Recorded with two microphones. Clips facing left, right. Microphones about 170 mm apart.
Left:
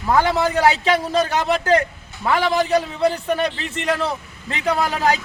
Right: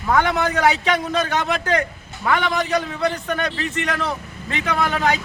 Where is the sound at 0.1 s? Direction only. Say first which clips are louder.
Left 1 dB; 30° left (ahead or behind).